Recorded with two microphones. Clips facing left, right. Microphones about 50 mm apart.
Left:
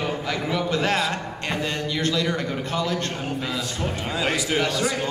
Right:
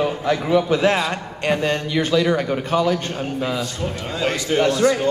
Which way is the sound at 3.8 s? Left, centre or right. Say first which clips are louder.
Left 1 dB; centre.